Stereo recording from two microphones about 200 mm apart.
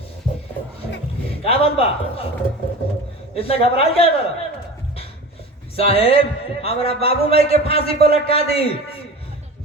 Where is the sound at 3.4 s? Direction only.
30° left (ahead or behind).